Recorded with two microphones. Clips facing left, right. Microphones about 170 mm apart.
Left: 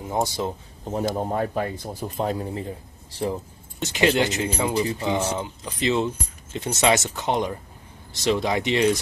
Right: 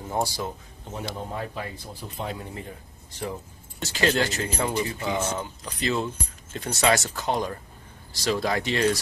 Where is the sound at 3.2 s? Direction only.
30° left (ahead or behind).